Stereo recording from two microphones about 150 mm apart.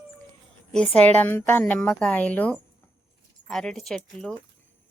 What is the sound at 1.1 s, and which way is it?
A woman's voice, 15° left (ahead or behind).